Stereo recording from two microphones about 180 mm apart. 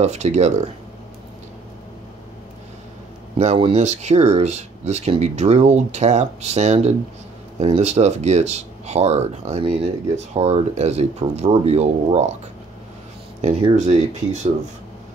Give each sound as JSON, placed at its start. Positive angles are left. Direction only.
{"t": 0.0, "sound": "speech", "side_deg": -40}
{"t": 3.3, "sound": "speech", "side_deg": -35}
{"t": 13.4, "sound": "speech", "side_deg": -40}